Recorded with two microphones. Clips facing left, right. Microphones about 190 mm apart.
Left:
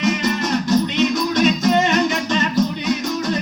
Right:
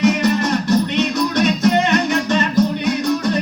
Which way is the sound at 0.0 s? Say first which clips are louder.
Right 4 dB; 60° right (ahead or behind).